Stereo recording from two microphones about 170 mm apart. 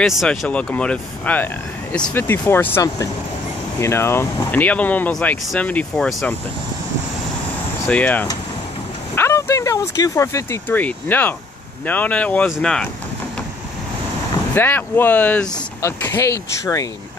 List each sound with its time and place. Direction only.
0.0 s speech: centre (ahead or behind)
7.9 s speech: 10° left (ahead or behind)
14.5 s speech: 10° left (ahead or behind)